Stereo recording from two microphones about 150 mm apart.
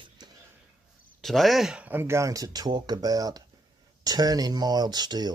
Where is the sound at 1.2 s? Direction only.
Centre (ahead or behind).